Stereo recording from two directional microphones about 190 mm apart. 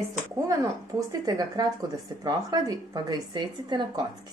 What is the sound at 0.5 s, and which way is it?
Speech, 15° right (ahead or behind).